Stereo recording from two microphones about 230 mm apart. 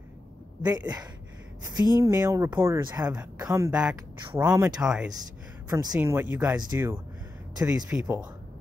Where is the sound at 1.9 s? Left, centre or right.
Centre.